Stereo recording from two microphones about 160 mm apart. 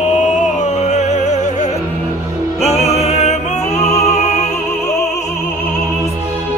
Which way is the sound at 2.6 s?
40° left (ahead or behind).